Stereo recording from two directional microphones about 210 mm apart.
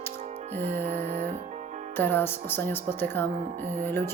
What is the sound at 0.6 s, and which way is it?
Speech, 10° left (ahead or behind).